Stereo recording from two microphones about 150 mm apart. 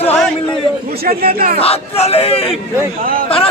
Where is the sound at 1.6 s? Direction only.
45° left (ahead or behind).